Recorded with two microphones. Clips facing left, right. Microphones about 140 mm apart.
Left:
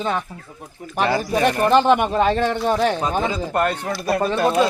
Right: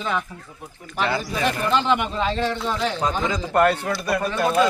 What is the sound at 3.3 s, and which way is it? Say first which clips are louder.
Speech: right 2 dB; 25° left (ahead or behind).